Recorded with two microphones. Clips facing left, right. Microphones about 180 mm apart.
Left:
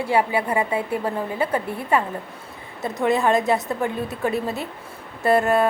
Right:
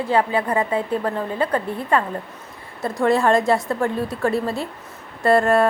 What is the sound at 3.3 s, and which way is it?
Speech, 20° left (ahead or behind).